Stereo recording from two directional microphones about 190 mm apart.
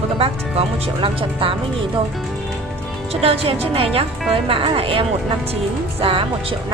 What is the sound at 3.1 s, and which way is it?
Speech, 30° right (ahead or behind).